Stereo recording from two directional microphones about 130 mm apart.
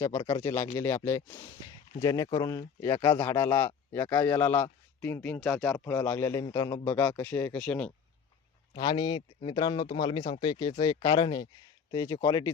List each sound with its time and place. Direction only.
0.4 s speech: 20° left (ahead or behind)
1.3 s speech: 35° left (ahead or behind); by 5.8 s 10° left (ahead or behind)
5.8 s speech: 20° left (ahead or behind)
8.7 s speech: 35° left (ahead or behind)